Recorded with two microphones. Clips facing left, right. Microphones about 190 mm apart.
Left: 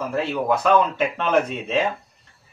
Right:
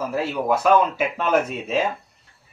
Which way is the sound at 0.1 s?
5° right (ahead or behind).